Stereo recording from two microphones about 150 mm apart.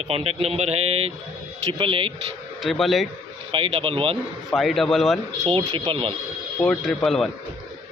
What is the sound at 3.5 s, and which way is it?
Speech, 40° right (ahead or behind).